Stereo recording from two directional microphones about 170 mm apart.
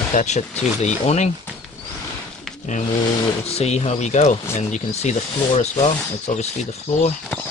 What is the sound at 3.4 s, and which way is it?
Speech, 40° left (ahead or behind).